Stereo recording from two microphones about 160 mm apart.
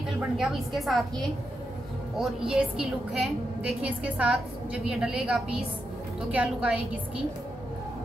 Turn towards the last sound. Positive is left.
turn(degrees=-5)  # may be behind; listen again after turning